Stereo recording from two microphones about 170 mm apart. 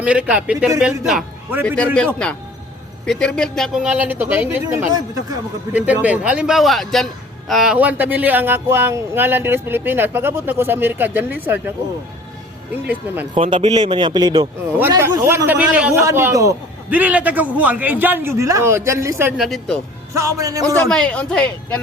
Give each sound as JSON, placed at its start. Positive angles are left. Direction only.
{"t": 0.0, "sound": "a man's voice", "side_deg": -5}
{"t": 1.6, "sound": "speech", "side_deg": 5}
{"t": 3.1, "sound": "a man's voice", "side_deg": 5}
{"t": 12.7, "sound": "a man's voice", "side_deg": -10}
{"t": 13.3, "sound": "a man's voice", "side_deg": -35}
{"t": 14.8, "sound": "a man's voice", "side_deg": -15}
{"t": 19.4, "sound": "speech", "side_deg": 0}
{"t": 20.1, "sound": "a man's voice", "side_deg": -20}
{"t": 20.8, "sound": "speech", "side_deg": 5}